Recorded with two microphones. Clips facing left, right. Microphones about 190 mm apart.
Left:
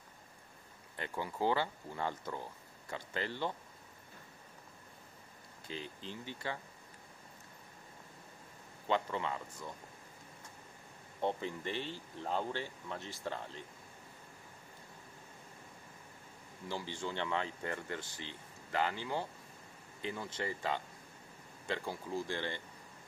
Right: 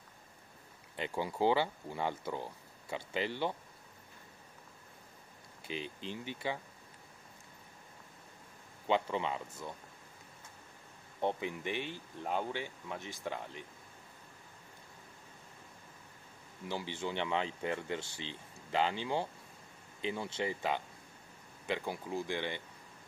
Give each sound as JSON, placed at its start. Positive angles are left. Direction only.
{"t": 0.9, "sound": "speech", "side_deg": -20}
{"t": 5.7, "sound": "speech", "side_deg": -20}
{"t": 8.8, "sound": "speech", "side_deg": -20}
{"t": 11.1, "sound": "speech", "side_deg": -15}
{"t": 16.6, "sound": "speech", "side_deg": -20}